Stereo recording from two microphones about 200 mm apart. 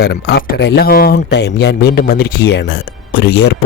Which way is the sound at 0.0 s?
55° left (ahead or behind).